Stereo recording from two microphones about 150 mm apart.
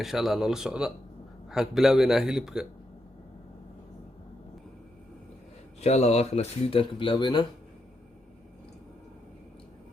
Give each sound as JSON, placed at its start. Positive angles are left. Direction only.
{"t": 0.0, "sound": "a man's voice", "side_deg": 0}
{"t": 5.8, "sound": "speech", "side_deg": 45}